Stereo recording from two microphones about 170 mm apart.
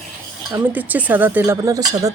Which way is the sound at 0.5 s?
10° right (ahead or behind).